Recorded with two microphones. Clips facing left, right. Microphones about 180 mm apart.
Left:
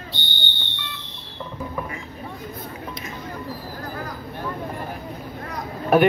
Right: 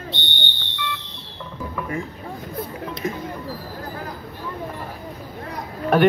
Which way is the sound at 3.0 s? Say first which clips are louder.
Right 9 dB; 35° right (ahead or behind).